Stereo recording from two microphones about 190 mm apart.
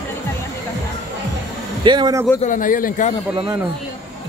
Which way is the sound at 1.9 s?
20° right (ahead or behind).